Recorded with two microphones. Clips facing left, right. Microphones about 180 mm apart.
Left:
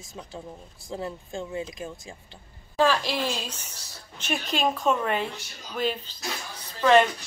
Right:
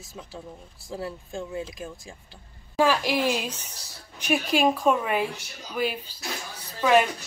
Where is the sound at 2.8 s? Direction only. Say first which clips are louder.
Right 1 dB; 10° right (ahead or behind).